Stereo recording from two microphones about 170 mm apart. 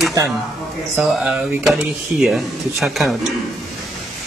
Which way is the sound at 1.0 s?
Centre (ahead or behind).